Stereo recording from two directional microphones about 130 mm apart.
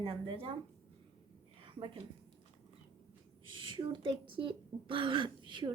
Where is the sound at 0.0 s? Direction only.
45° right (ahead or behind).